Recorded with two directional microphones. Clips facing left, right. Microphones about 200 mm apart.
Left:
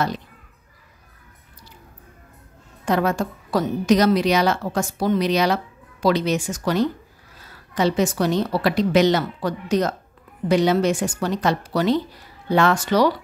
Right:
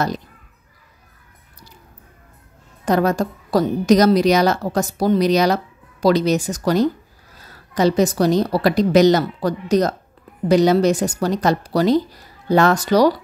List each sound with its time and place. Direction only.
2.8 s a woman's voice: 40° right (ahead or behind)